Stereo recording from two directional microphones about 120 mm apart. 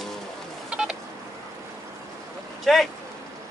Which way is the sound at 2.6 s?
Centre (ahead or behind).